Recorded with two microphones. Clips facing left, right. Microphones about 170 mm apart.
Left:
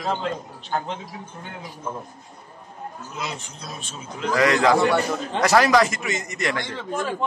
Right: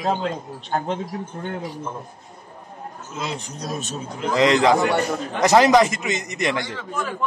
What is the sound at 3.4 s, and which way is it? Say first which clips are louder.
Speech: right 8 dB; 40° right (ahead or behind).